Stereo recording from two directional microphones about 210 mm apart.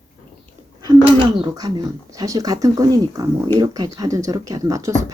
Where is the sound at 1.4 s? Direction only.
20° right (ahead or behind).